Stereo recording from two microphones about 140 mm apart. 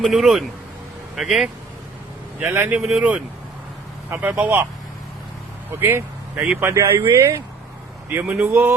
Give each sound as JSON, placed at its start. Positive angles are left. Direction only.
{"t": 0.0, "sound": "speech", "side_deg": -5}
{"t": 2.4, "sound": "speech", "side_deg": -15}
{"t": 5.8, "sound": "speech", "side_deg": -15}